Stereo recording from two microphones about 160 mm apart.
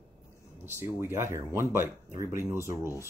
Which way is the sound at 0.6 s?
15° right (ahead or behind).